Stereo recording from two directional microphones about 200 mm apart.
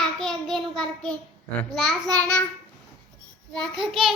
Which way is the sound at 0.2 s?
Centre (ahead or behind).